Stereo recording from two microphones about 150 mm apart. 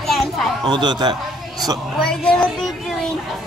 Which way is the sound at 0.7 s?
30° right (ahead or behind).